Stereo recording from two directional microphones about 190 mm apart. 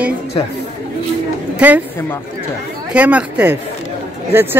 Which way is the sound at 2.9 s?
10° right (ahead or behind).